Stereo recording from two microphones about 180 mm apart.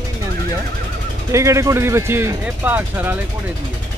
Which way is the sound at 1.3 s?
15° right (ahead or behind).